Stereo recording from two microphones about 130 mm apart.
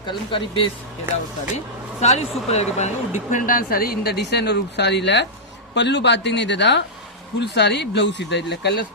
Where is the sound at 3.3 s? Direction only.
90° left.